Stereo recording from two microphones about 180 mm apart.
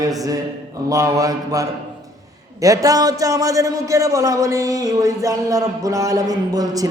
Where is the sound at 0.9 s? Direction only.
20° right (ahead or behind).